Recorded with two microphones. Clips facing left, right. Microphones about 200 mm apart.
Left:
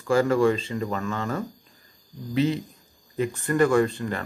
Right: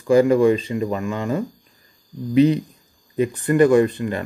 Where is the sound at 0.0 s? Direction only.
15° right (ahead or behind).